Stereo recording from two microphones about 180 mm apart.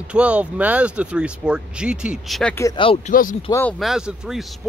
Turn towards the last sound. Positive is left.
turn(degrees=0)  # may be behind; listen again after turning